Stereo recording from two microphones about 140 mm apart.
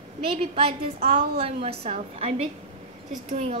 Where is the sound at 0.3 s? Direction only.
45° right (ahead or behind).